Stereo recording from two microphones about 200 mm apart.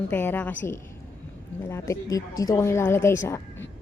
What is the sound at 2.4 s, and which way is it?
A woman's voice, 15° left (ahead or behind).